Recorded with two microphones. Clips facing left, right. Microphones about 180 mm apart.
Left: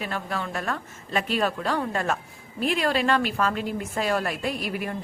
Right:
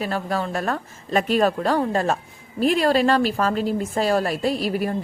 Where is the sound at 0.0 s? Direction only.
40° right (ahead or behind).